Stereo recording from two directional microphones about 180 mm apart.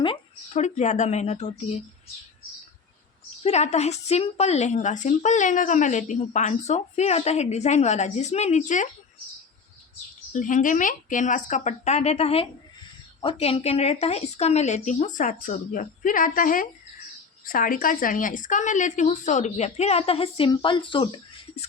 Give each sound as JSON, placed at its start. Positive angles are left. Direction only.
{"t": 0.0, "sound": "a sound", "side_deg": 30}
{"t": 0.6, "sound": "speech", "side_deg": 40}
{"t": 3.4, "sound": "speech", "side_deg": 40}
{"t": 10.3, "sound": "speech", "side_deg": 45}